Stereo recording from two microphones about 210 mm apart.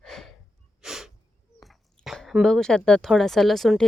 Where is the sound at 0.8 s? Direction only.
Centre (ahead or behind).